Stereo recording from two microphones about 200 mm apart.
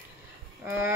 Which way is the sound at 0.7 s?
10° right (ahead or behind).